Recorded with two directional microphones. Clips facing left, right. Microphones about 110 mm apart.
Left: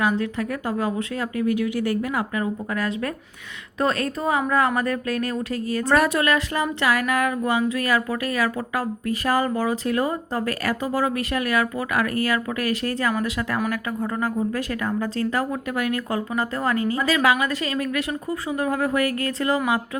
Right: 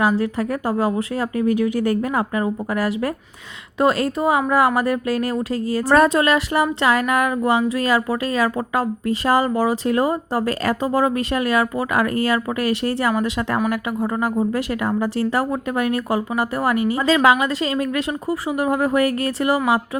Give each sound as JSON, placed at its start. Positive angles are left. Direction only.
{"t": 0.2, "sound": "speech", "side_deg": -30}
{"t": 1.8, "sound": "speech", "side_deg": -45}
{"t": 2.3, "sound": "a woman's voice", "side_deg": -30}